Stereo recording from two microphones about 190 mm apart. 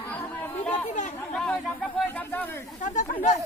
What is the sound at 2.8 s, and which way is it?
Speech, 40° left (ahead or behind).